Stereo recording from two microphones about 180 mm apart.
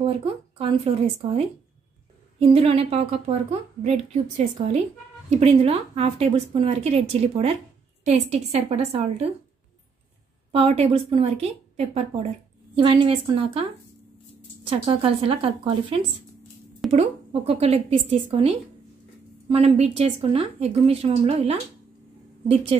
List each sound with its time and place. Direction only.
0.0 s a woman's voice: 30° right (ahead or behind)
2.5 s a woman's voice: 35° right (ahead or behind)
10.5 s a woman's voice: 35° right (ahead or behind)
14.7 s a woman's voice: 30° right (ahead or behind)